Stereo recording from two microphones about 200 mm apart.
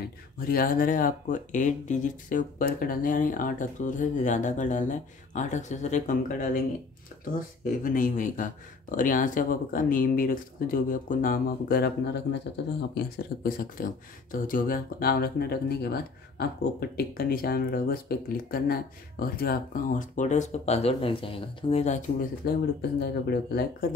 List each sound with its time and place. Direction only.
0.4 s speech: 45° left (ahead or behind); by 12.7 s 60° left (ahead or behind)
12.9 s speech: 45° left (ahead or behind)
22.4 s speech: 55° left (ahead or behind)